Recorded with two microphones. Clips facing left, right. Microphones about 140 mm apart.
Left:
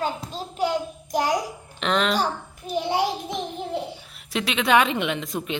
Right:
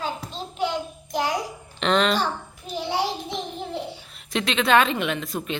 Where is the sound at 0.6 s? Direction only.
40° left (ahead or behind).